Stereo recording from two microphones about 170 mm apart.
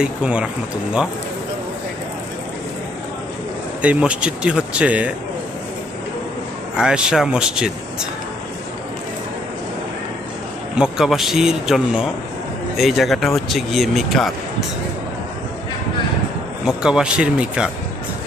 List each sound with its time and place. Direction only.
0.0 s speech: 5° right (ahead or behind)
3.8 s speech: 5° right (ahead or behind)
6.7 s speech: 5° right (ahead or behind)
10.8 s speech: centre (ahead or behind)
16.6 s speech: 5° right (ahead or behind)